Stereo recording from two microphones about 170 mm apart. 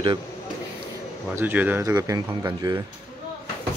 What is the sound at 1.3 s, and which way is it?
Speech, 10° right (ahead or behind).